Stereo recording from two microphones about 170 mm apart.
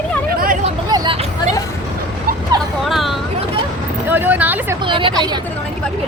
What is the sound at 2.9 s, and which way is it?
Vehicle, centre (ahead or behind).